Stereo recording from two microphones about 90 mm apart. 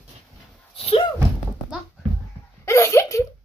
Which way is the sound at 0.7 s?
90° left.